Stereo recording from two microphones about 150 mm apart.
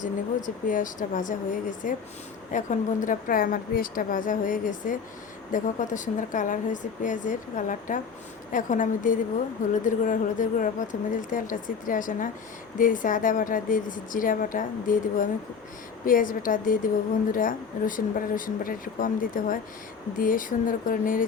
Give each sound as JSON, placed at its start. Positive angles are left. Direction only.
{"t": 0.0, "sound": "speech", "side_deg": 60}